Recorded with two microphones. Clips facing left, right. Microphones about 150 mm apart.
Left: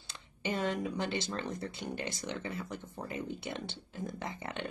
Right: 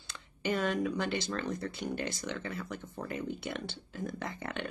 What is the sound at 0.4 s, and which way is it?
Speech, 25° left (ahead or behind).